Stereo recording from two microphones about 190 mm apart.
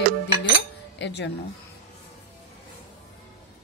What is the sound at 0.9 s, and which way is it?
Speech, 65° left (ahead or behind).